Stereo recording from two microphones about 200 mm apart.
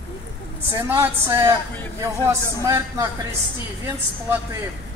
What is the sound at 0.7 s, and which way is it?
A man's voice, 10° right (ahead or behind).